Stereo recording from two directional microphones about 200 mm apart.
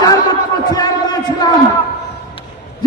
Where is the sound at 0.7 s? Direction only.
20° left (ahead or behind).